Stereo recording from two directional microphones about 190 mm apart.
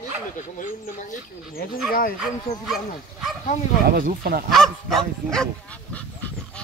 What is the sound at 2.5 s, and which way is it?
Speech, 35° left (ahead or behind).